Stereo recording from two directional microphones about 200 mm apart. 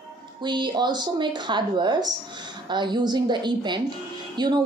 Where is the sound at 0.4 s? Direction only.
20° right (ahead or behind).